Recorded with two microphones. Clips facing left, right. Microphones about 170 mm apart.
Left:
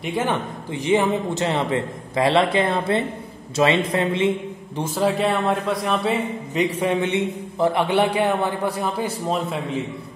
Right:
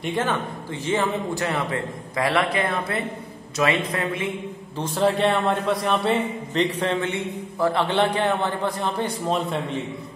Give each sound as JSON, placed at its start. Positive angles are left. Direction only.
{"t": 0.0, "sound": "speech", "side_deg": 10}
{"t": 4.9, "sound": "a man's voice", "side_deg": 0}